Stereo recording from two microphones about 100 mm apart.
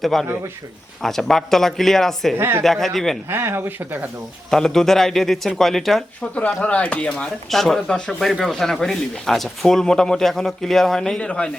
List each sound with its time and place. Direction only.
0.0 s speech: centre (ahead or behind)
2.4 s speech: 25° right (ahead or behind)
2.6 s speech: centre (ahead or behind)
3.2 s speech: 25° right (ahead or behind)
4.5 s speech: 5° left (ahead or behind)